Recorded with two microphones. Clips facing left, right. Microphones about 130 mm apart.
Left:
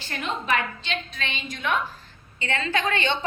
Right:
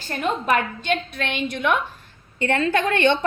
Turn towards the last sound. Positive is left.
turn(degrees=-60)  # may be behind; listen again after turning